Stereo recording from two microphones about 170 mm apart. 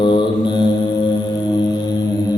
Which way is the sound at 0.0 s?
25° left (ahead or behind).